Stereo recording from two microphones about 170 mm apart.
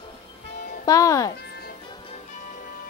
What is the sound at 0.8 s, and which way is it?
Speech, 20° left (ahead or behind).